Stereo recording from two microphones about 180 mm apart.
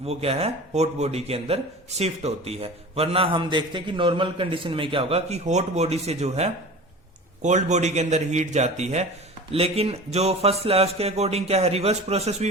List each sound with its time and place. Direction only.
0.0 s speech: 35° right (ahead or behind)